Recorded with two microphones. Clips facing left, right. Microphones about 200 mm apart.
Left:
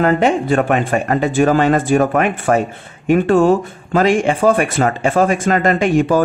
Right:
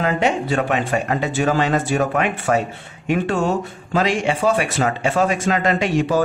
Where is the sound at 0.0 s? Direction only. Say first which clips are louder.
Left 5 dB; 55° left (ahead or behind).